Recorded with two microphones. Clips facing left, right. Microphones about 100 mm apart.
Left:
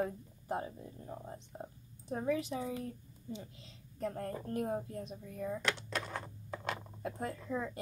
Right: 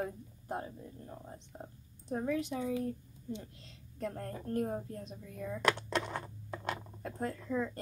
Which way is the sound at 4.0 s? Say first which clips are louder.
Left 1 dB; 5° left (ahead or behind).